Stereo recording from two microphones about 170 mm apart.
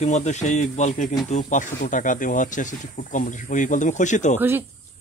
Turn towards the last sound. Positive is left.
turn(degrees=-10)  # may be behind; listen again after turning